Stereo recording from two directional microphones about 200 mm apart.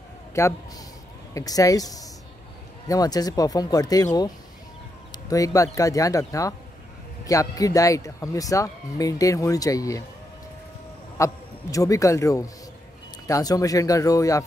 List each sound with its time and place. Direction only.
0.3 s speech: 15° left (ahead or behind)
11.1 s a man's voice: 15° left (ahead or behind)